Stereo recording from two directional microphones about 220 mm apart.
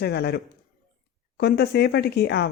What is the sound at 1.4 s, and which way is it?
Speech, 45° left (ahead or behind).